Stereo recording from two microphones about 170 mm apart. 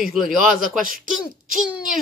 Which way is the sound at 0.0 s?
Centre (ahead or behind).